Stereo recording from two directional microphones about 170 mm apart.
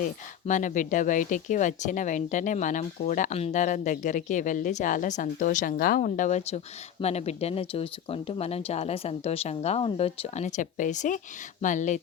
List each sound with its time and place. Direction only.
0.4 s speech: 50° left (ahead or behind)